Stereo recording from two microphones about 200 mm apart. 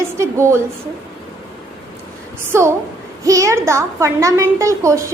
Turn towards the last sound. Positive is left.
turn(degrees=-15)  # may be behind; listen again after turning